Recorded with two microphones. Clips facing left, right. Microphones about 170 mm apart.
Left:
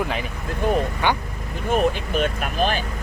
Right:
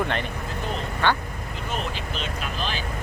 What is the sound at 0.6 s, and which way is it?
Speech, 55° left (ahead or behind).